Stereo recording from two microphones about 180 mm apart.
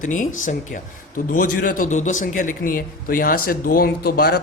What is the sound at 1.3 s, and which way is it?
A man's voice, 50° left (ahead or behind).